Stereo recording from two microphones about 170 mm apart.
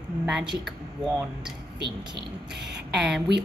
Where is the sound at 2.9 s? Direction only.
Centre (ahead or behind).